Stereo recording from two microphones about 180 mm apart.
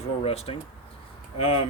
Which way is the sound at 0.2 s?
30° left (ahead or behind).